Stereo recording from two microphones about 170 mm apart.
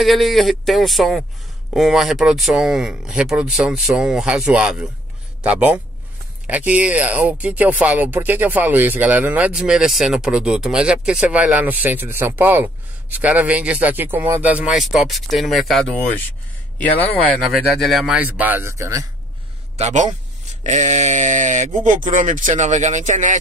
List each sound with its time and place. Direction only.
0.0 s speech: centre (ahead or behind); by 19.0 s 15° right (ahead or behind)
19.8 s speech: 45° right (ahead or behind)